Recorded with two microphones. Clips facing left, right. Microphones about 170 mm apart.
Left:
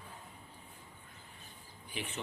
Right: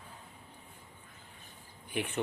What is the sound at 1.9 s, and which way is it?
Speech, 55° right (ahead or behind).